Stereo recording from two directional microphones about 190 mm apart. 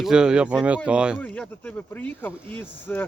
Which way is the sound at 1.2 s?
10° left (ahead or behind).